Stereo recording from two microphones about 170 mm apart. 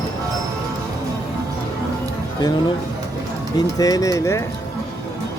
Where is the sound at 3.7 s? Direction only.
20° left (ahead or behind).